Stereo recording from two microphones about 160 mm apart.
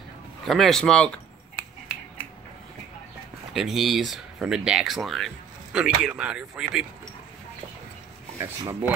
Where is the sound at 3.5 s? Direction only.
Centre (ahead or behind).